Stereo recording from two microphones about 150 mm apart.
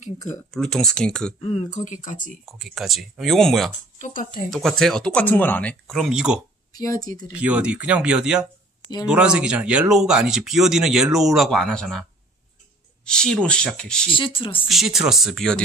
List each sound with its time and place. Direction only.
0.5 s speech: 5° left (ahead or behind)
1.4 s speech: 50° left (ahead or behind)
2.4 s speech: centre (ahead or behind)
4.0 s speech: 60° left (ahead or behind)
4.5 s speech: centre (ahead or behind)
6.8 s speech: 25° left (ahead or behind)
7.3 s speech: 10° right (ahead or behind)
14.1 s speech: 35° left (ahead or behind)
14.7 s speech: centre (ahead or behind)